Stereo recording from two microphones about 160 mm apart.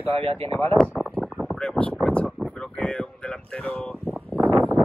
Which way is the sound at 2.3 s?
Centre (ahead or behind).